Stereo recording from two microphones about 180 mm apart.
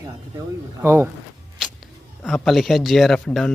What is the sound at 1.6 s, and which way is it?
Speech, centre (ahead or behind).